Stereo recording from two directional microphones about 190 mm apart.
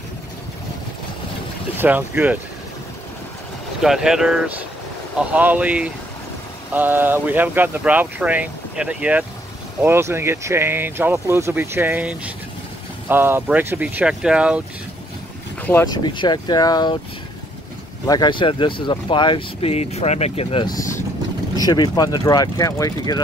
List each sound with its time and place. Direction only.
1.8 s speech: 10° right (ahead or behind)
3.8 s speech: centre (ahead or behind)
15.6 s speech: 10° left (ahead or behind)
18.0 s speech: 20° left (ahead or behind)